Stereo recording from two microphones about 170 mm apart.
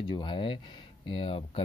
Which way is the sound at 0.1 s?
30° left (ahead or behind).